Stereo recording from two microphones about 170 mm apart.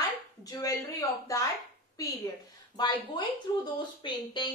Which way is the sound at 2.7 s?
25° left (ahead or behind).